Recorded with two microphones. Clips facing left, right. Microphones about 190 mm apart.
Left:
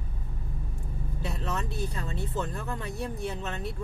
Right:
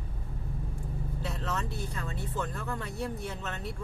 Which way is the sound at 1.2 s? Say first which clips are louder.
Left 2 dB; 15° left (ahead or behind).